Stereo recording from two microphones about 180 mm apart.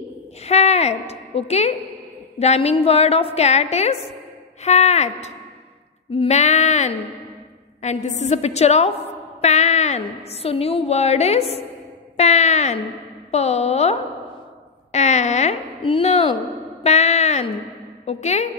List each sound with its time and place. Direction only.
0.4 s a woman's voice: 35° left (ahead or behind)